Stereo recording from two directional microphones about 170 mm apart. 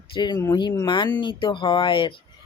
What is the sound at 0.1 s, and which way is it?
Speech, 25° left (ahead or behind).